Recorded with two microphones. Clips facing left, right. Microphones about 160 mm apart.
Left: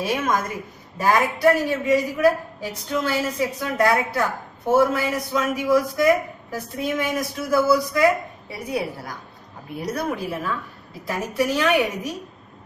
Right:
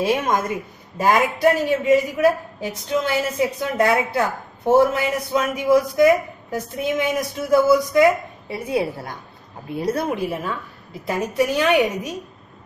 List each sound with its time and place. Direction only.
0.0 s a woman's voice: 25° right (ahead or behind)